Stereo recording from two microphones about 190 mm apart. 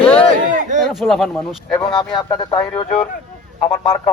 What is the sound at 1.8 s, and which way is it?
Speech, 20° left (ahead or behind).